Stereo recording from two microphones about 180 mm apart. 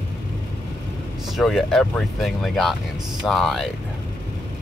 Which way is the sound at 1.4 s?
Centre (ahead or behind).